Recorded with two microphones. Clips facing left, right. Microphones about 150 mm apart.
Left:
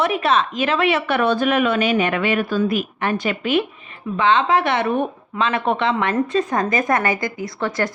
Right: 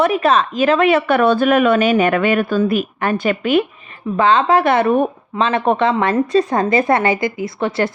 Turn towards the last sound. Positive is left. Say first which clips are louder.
# right 4 dB
turn(degrees=-25)  # may be behind; listen again after turning